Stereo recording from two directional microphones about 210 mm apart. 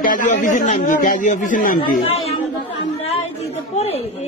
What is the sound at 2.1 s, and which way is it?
Chatter, 30° left (ahead or behind).